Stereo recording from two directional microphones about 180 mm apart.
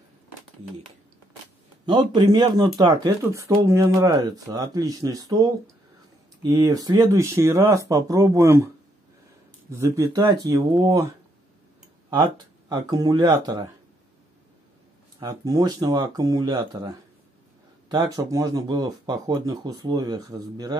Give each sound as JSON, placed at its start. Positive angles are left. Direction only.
{"t": 1.9, "sound": "speech", "side_deg": -25}
{"t": 9.7, "sound": "speech", "side_deg": -15}
{"t": 12.2, "sound": "speech", "side_deg": -25}
{"t": 15.1, "sound": "speech", "side_deg": -20}